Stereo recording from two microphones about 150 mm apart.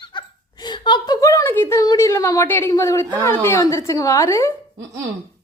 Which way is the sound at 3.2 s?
15° left (ahead or behind).